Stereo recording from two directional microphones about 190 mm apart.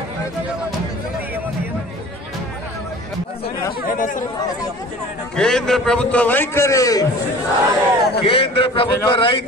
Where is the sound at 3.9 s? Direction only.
45° left (ahead or behind).